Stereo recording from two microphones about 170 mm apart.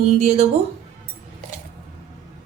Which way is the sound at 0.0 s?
40° right (ahead or behind).